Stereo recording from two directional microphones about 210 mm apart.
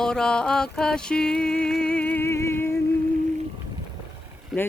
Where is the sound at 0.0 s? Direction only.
5° left (ahead or behind).